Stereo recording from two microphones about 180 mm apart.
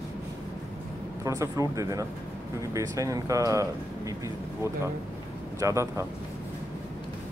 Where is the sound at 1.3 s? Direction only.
15° right (ahead or behind).